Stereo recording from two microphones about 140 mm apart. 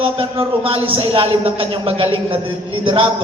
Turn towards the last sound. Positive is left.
turn(degrees=-40)  # may be behind; listen again after turning